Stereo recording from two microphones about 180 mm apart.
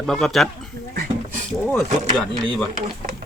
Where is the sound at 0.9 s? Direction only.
55° right (ahead or behind).